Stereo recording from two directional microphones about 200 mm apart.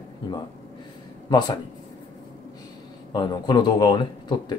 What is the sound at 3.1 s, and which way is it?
Speech, 20° left (ahead or behind).